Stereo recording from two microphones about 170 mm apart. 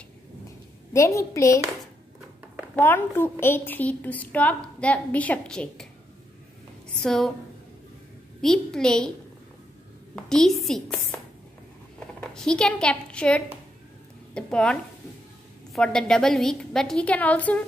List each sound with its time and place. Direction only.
0.9 s a woman's voice: 15° left (ahead or behind)
2.7 s a woman's voice: 10° left (ahead or behind)
7.0 s a woman's voice: 5° left (ahead or behind)
8.4 s a woman's voice: 5° left (ahead or behind)
10.1 s a woman's voice: 5° left (ahead or behind)
12.2 s a woman's voice: 5° left (ahead or behind)